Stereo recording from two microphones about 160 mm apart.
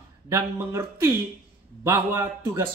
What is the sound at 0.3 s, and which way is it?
A man's voice, 15° right (ahead or behind).